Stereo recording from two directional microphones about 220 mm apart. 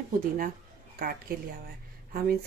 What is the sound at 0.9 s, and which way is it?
Speech, 40° right (ahead or behind).